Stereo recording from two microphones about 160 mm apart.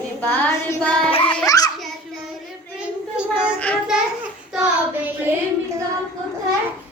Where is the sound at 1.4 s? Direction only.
20° left (ahead or behind).